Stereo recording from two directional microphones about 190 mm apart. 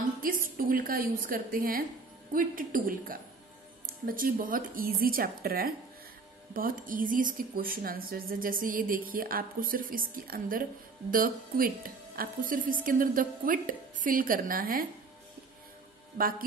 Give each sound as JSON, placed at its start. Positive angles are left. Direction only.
{"t": 0.2, "sound": "a woman's voice", "side_deg": -45}
{"t": 16.2, "sound": "a woman's voice", "side_deg": -50}